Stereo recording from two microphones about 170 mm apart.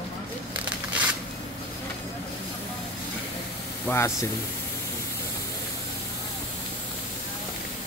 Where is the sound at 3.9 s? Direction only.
15° left (ahead or behind).